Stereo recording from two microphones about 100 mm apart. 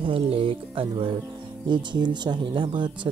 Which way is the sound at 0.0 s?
65° right (ahead or behind).